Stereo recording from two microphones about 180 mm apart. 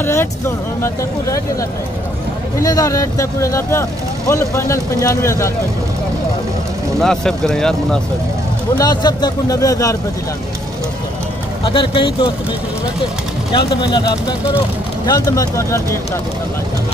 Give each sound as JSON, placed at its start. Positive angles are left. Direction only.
{"t": 0.0, "sound": "speech", "side_deg": 10}
{"t": 7.0, "sound": "speech", "side_deg": 5}
{"t": 8.7, "sound": "speech", "side_deg": 20}
{"t": 11.6, "sound": "speech", "side_deg": 25}
{"t": 13.5, "sound": "speech", "side_deg": 30}